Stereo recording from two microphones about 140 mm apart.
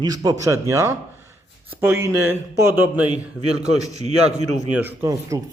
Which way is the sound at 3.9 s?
50° right (ahead or behind).